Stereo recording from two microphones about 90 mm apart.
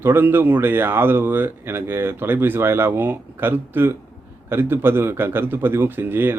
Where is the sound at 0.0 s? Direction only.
25° right (ahead or behind).